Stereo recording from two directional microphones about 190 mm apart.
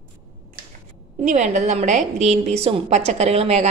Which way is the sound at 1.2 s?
40° right (ahead or behind).